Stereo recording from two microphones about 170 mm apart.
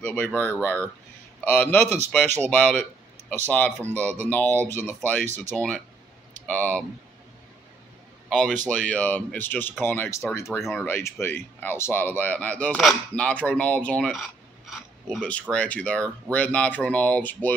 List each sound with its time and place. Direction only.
0.0 s speech: 10° left (ahead or behind)
5.2 s speech: 45° right (ahead or behind)
6.4 s speech: 5° left (ahead or behind)
8.3 s speech: centre (ahead or behind); by 10.4 s 15° left (ahead or behind)
10.6 s speech: centre (ahead or behind)
10.9 s speech: 15° left (ahead or behind)